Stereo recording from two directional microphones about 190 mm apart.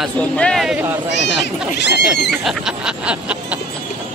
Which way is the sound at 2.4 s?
Centre (ahead or behind).